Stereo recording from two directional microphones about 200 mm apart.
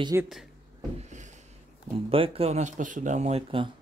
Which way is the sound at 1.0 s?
35° right (ahead or behind).